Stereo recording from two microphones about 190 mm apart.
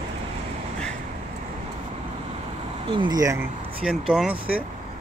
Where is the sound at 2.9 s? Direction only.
25° right (ahead or behind).